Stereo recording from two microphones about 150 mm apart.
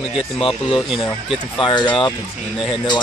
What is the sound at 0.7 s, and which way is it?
Speech, 35° left (ahead or behind).